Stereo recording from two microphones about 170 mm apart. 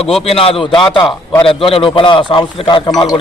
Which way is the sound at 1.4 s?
30° left (ahead or behind).